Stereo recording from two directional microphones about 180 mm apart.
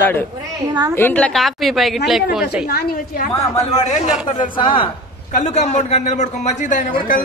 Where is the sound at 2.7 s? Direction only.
55° left (ahead or behind).